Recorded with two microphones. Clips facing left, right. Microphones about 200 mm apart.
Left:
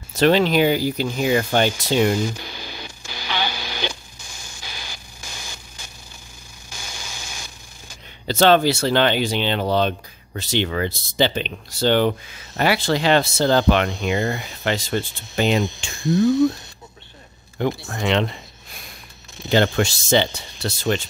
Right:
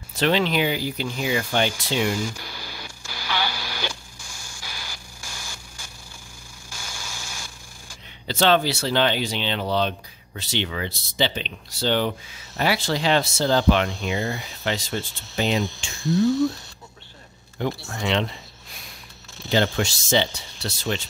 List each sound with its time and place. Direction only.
0.1 s speech: 45° left (ahead or behind)
2.0 s radio: 20° left (ahead or behind)
6.7 s a sound: 20° left (ahead or behind)
8.3 s speech: 45° left (ahead or behind)
17.6 s speech: 55° left (ahead or behind)
19.5 s speech: 55° left (ahead or behind)